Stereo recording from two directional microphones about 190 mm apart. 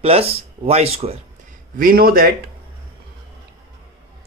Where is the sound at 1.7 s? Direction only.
50° right (ahead or behind).